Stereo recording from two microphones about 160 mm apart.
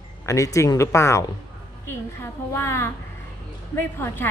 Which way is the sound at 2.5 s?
15° left (ahead or behind).